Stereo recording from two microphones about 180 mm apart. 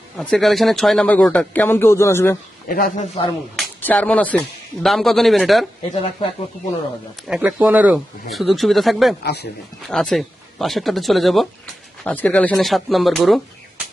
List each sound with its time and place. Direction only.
0.2 s speech: 5° left (ahead or behind)
2.6 s a man's voice: 50° left (ahead or behind)
3.5 s speech: 5° left (ahead or behind)
5.9 s speech: 35° left (ahead or behind)
7.3 s speech: 5° right (ahead or behind)
9.2 s speech: 65° left (ahead or behind)
9.8 s speech: 5° left (ahead or behind)